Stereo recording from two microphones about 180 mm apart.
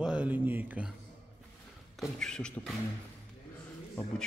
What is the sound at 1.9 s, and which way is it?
Speech, 5° left (ahead or behind).